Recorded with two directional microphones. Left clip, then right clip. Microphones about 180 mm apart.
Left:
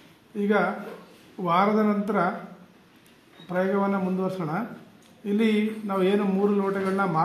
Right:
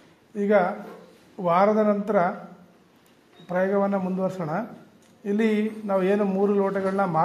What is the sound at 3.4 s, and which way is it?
A man's voice, 45° right (ahead or behind).